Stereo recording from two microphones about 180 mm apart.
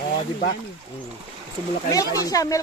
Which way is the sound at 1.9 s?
20° left (ahead or behind).